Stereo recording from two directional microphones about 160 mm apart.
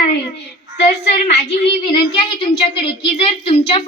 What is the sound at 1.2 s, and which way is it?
A woman's voice, 40° left (ahead or behind).